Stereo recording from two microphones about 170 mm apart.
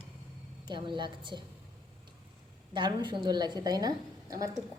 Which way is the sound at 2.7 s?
25° right (ahead or behind).